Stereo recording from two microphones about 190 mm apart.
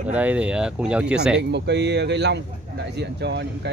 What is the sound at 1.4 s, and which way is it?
Speech, 65° right (ahead or behind).